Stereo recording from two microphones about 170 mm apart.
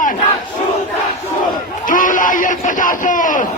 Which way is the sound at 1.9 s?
50° left (ahead or behind).